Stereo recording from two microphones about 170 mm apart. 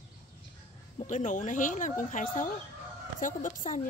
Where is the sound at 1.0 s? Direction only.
50° left (ahead or behind).